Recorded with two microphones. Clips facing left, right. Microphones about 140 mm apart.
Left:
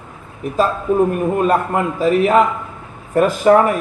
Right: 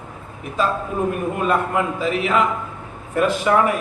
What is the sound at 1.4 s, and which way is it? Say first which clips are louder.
Speech: left 3 dB; 40° left (ahead or behind).